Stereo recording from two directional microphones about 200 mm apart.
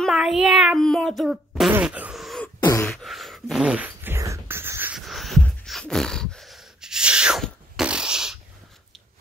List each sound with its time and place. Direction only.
0.0 s fart: centre (ahead or behind)
1.7 s beatboxing: 5° right (ahead or behind); by 3.0 s 10° left (ahead or behind)
3.0 s a sound: centre (ahead or behind)